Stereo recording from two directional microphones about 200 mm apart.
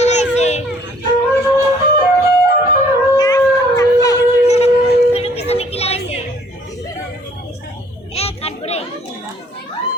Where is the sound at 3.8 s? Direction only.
15° left (ahead or behind).